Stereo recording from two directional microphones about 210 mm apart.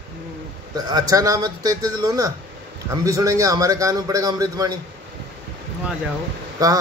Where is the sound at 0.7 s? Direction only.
15° right (ahead or behind).